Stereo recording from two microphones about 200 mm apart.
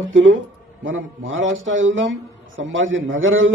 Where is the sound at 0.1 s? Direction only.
75° right (ahead or behind).